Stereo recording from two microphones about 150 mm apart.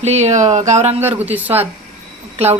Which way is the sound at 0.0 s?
45° right (ahead or behind).